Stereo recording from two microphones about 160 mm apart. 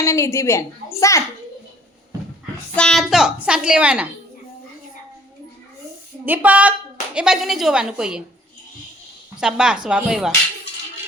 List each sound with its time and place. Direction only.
0.0 s a woman's voice: 15° left (ahead or behind)
2.7 s a woman's voice: 5° left (ahead or behind)
6.2 s a woman's voice: 10° right (ahead or behind)
9.4 s a woman's voice: 5° right (ahead or behind)